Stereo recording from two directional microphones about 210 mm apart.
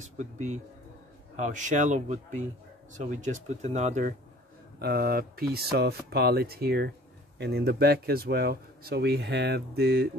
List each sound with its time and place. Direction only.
0.0 s speech: 35° right (ahead or behind)
4.7 s speech: 50° right (ahead or behind)